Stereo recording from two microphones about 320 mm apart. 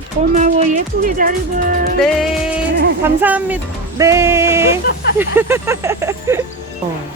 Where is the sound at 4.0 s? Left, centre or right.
Centre.